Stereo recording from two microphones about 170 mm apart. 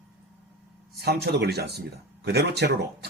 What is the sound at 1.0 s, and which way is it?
Speech, 70° right (ahead or behind).